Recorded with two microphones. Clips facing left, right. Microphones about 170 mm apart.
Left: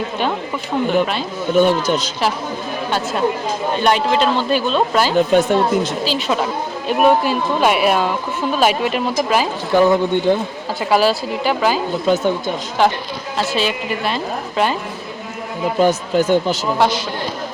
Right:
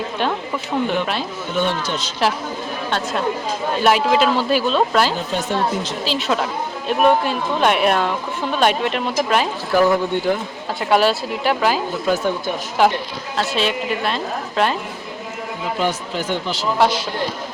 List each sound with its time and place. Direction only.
1.5 s speech: 40° left (ahead or behind)
3.8 s speech: 5° right (ahead or behind)
5.3 s a woman's voice: 55° left (ahead or behind)
6.1 s speech: centre (ahead or behind)
9.7 s speech: 20° left (ahead or behind)
10.8 s speech: centre (ahead or behind)
12.0 s speech: 20° left (ahead or behind)
12.8 s speech: centre (ahead or behind)
15.8 s speech: 45° left (ahead or behind)